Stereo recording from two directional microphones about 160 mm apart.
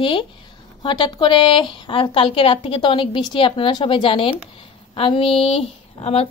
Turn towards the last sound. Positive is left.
turn(degrees=35)  # may be behind; listen again after turning